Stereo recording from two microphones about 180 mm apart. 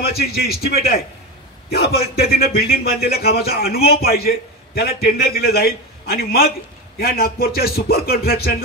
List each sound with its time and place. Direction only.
0.0 s speech: 60° left (ahead or behind)